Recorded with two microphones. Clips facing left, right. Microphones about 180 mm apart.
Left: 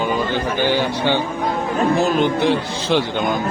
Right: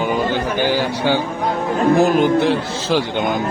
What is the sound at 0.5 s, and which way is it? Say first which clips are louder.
Speech: even; 10° right (ahead or behind).